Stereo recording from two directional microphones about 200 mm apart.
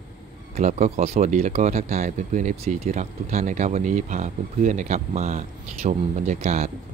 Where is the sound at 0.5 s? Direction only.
35° right (ahead or behind).